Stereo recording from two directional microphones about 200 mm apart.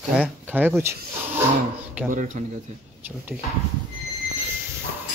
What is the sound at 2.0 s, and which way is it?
Speech, 40° right (ahead or behind).